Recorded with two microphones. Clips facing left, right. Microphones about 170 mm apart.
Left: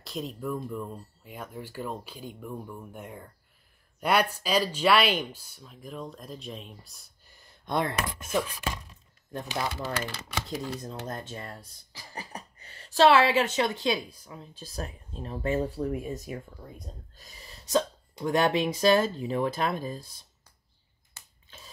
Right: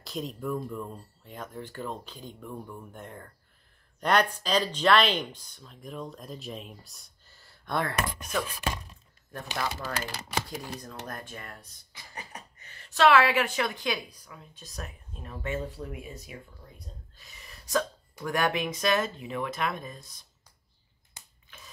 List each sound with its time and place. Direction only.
0.0 s speech: centre (ahead or behind)
7.2 s speech: 15° left (ahead or behind)
21.2 s a sound: 15° right (ahead or behind)